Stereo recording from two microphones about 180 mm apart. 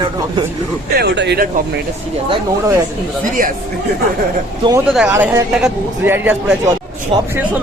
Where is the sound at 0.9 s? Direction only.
70° right (ahead or behind).